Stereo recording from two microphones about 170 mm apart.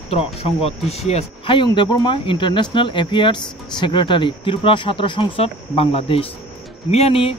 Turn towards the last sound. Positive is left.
turn(degrees=35)  # may be behind; listen again after turning